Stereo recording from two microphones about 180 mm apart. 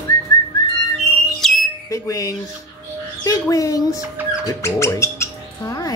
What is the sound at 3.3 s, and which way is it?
Speech, 20° left (ahead or behind).